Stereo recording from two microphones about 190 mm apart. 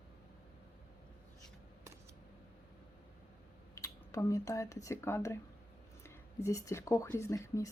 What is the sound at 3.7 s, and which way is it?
Speech, 15° left (ahead or behind).